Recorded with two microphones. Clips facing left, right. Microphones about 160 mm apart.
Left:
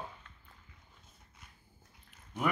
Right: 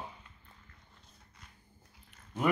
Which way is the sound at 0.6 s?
5° left (ahead or behind).